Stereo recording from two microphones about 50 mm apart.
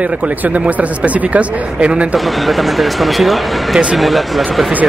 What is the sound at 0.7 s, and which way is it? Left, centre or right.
Speech, right.